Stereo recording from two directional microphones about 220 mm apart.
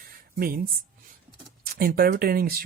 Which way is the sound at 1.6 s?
40° right (ahead or behind).